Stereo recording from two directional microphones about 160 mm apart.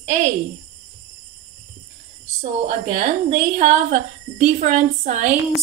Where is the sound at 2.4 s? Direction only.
50° right (ahead or behind).